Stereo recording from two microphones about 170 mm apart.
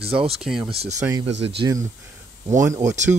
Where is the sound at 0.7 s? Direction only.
35° right (ahead or behind).